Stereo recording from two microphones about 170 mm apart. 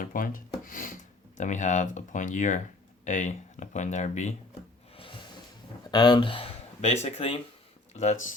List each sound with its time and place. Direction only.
0.0 s speech: 50° left (ahead or behind)
4.9 s snort: 30° left (ahead or behind)
5.9 s speech: 25° left (ahead or behind); by 8.4 s 45° left (ahead or behind)